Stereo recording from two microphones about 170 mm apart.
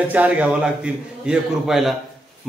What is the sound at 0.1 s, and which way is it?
A man's voice, 10° right (ahead or behind).